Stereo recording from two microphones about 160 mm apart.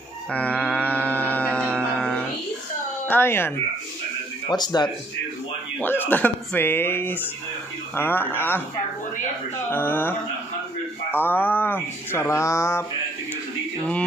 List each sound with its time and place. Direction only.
0.3 s music: 10° left (ahead or behind)
3.1 s speech: 15° left (ahead or behind)
4.5 s speech: 25° left (ahead or behind)
5.8 s speech: 10° left (ahead or behind)
9.7 s speech: 15° left (ahead or behind)